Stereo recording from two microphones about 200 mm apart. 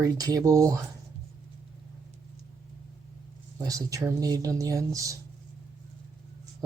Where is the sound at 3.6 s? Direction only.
15° right (ahead or behind).